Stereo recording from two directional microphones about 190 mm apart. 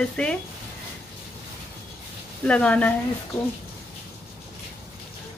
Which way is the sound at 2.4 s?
5° left (ahead or behind).